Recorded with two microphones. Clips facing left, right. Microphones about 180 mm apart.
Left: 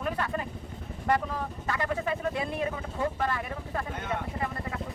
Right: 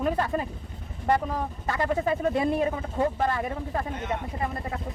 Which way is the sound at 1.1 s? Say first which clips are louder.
Right 3 dB; 30° right (ahead or behind).